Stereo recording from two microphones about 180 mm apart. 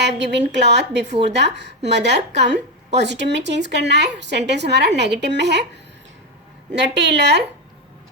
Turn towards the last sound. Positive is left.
turn(degrees=-70)  # may be behind; listen again after turning